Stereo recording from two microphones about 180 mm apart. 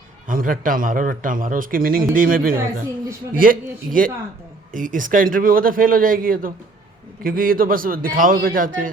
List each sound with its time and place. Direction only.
0.3 s a man's voice: 50° right (ahead or behind)